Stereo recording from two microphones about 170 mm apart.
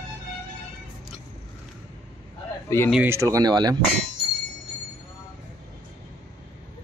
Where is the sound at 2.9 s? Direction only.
15° right (ahead or behind).